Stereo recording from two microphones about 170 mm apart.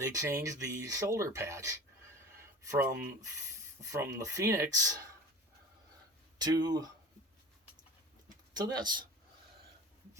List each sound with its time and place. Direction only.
0.0 s speech: 20° right (ahead or behind)
3.9 s speech: 20° right (ahead or behind)
6.4 s speech: 25° right (ahead or behind)
8.5 s speech: 25° right (ahead or behind)